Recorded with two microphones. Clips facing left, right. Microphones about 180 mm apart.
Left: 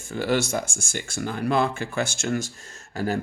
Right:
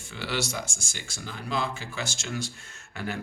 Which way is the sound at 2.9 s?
40° left (ahead or behind).